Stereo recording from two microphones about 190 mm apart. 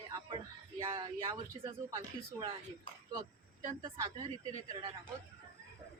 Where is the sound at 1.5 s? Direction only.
15° right (ahead or behind).